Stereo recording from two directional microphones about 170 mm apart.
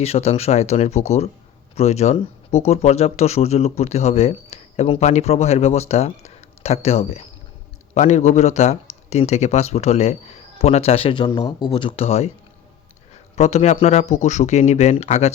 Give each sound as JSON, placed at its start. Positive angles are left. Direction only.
{"t": 0.0, "sound": "speech", "side_deg": 35}
{"t": 13.3, "sound": "speech", "side_deg": 40}